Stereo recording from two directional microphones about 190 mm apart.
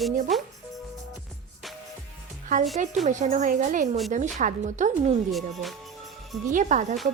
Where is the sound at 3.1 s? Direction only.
40° right (ahead or behind).